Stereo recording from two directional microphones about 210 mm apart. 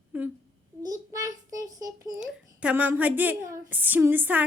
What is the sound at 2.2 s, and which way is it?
Speech, 5° right (ahead or behind).